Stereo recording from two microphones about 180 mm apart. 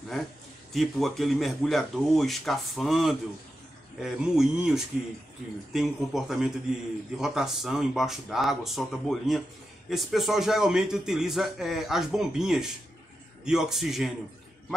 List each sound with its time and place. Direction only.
0.7 s a man's voice: centre (ahead or behind)